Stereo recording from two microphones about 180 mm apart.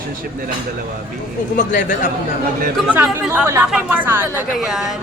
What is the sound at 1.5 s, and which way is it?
Speech, 45° left (ahead or behind).